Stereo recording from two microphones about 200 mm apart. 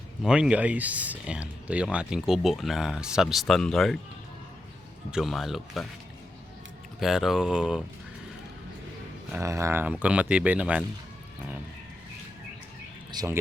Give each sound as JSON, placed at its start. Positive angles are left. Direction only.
{"t": 0.2, "sound": "speech", "side_deg": -5}
{"t": 5.1, "sound": "speech", "side_deg": 0}
{"t": 7.0, "sound": "speech", "side_deg": 0}
{"t": 9.3, "sound": "speech", "side_deg": -15}
{"t": 13.1, "sound": "speech", "side_deg": -15}